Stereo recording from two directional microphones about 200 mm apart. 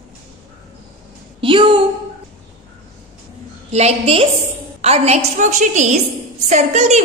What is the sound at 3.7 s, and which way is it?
A woman's voice, 30° right (ahead or behind).